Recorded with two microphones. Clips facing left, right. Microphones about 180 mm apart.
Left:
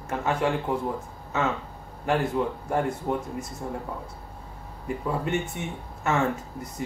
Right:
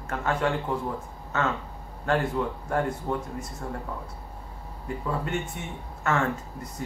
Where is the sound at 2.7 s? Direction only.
15° left (ahead or behind).